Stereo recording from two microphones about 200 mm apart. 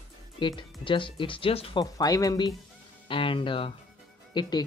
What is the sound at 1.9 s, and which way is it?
Speech, 20° left (ahead or behind).